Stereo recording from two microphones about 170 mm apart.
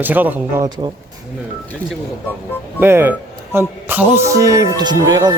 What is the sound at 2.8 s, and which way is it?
Speech, 15° right (ahead or behind).